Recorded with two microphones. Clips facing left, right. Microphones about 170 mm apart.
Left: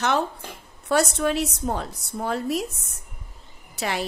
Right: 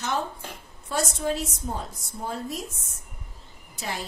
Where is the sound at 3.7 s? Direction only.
70° left (ahead or behind).